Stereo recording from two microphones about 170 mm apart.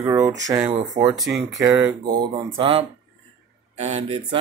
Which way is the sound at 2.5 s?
30° right (ahead or behind).